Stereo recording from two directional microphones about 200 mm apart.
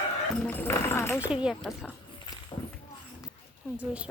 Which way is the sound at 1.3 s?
5° right (ahead or behind).